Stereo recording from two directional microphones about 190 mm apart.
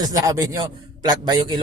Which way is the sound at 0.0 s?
20° right (ahead or behind).